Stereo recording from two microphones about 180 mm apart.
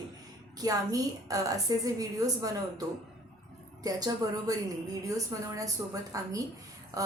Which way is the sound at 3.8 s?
20° right (ahead or behind).